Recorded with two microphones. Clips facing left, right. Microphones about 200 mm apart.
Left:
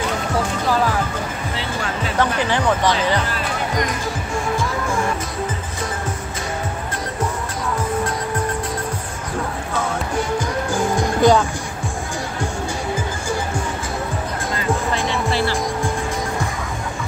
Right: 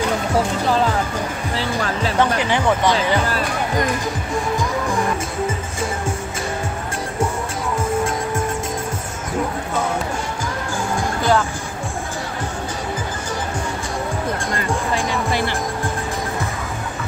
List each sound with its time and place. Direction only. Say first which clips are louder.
11.0 s music: left 4 dB; 15° left (ahead or behind)